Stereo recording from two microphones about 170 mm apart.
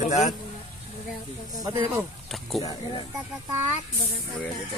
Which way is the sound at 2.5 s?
20° left (ahead or behind).